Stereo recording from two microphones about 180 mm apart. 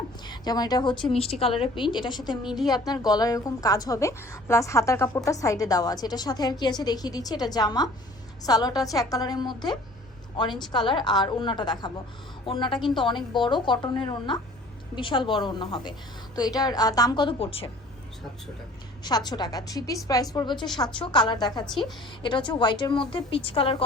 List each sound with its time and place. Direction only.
0.3 s a woman's voice: 20° left (ahead or behind)
10.7 s a woman's voice: 25° left (ahead or behind)
19.0 s a woman's voice: 20° left (ahead or behind)